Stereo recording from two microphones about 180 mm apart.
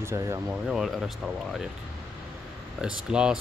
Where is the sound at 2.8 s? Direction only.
5° right (ahead or behind).